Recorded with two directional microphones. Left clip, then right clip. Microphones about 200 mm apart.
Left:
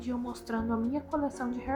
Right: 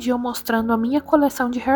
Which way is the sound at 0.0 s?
45° right (ahead or behind).